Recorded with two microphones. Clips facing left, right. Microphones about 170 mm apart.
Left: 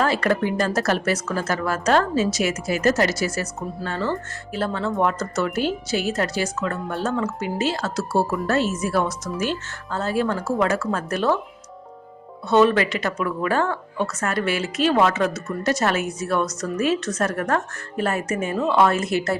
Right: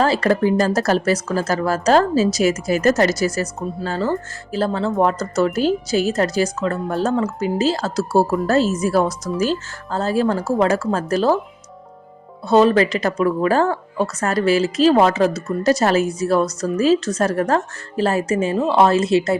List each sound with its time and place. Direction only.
0.0 s speech: 35° right (ahead or behind)
12.5 s speech: 35° right (ahead or behind)